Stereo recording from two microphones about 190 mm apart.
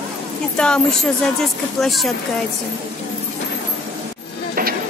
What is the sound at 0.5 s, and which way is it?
Speech, 5° left (ahead or behind).